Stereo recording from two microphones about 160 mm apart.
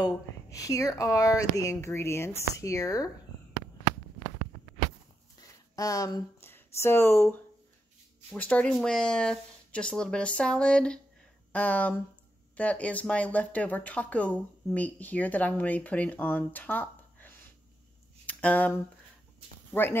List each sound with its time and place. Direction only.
0.0 s speech: 20° left (ahead or behind)
5.8 s speech: 20° left (ahead or behind)
8.4 s speech: 10° left (ahead or behind)
18.2 s a sound: 10° left (ahead or behind)
19.7 s speech: 15° left (ahead or behind)